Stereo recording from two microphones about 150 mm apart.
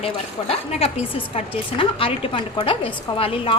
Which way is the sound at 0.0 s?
40° left (ahead or behind).